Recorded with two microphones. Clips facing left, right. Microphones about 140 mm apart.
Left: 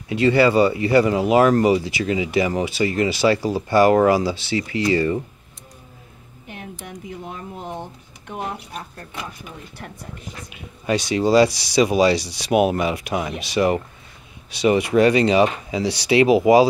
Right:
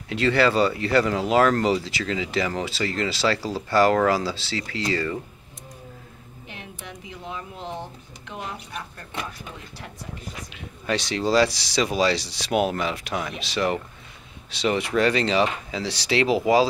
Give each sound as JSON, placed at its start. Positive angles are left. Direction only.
{"t": 0.1, "sound": "speech", "side_deg": 15}
{"t": 6.4, "sound": "speech", "side_deg": 45}
{"t": 7.6, "sound": "speech", "side_deg": 15}
{"t": 8.3, "sound": "speech", "side_deg": 50}
{"t": 10.5, "sound": "speech", "side_deg": 10}